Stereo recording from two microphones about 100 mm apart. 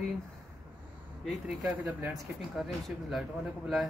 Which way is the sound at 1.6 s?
20° right (ahead or behind).